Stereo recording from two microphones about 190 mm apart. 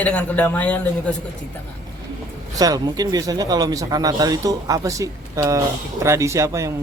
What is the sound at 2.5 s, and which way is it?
Speech, 20° right (ahead or behind).